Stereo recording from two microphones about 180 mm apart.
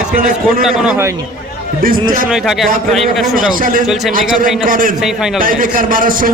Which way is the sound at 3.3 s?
50° right (ahead or behind).